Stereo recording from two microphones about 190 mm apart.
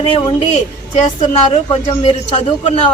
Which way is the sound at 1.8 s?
30° left (ahead or behind).